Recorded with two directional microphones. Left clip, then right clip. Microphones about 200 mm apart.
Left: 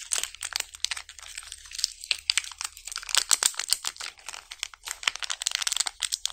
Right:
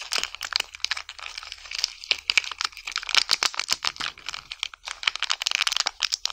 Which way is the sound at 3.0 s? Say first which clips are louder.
Right 3 dB; 20° right (ahead or behind).